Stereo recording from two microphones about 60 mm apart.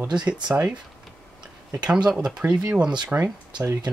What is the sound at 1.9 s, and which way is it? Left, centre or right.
Speech, centre.